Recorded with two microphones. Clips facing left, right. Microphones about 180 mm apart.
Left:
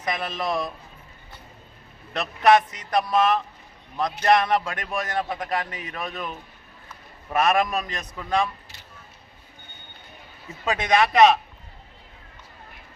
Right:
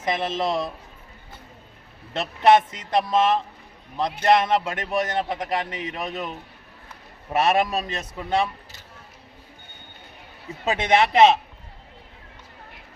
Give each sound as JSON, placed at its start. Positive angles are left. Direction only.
{"t": 0.0, "sound": "a man's voice", "side_deg": -25}
{"t": 2.1, "sound": "a man's voice", "side_deg": -25}
{"t": 7.3, "sound": "a man's voice", "side_deg": -30}
{"t": 10.7, "sound": "a man's voice", "side_deg": -25}